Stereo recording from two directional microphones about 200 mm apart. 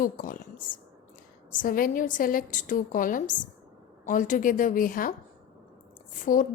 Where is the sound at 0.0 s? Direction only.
40° left (ahead or behind).